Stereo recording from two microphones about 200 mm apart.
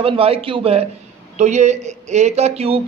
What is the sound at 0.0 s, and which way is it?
A man's voice, 30° right (ahead or behind).